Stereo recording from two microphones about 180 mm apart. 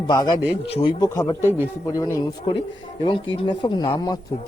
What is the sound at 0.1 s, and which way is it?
A man's voice, 20° left (ahead or behind).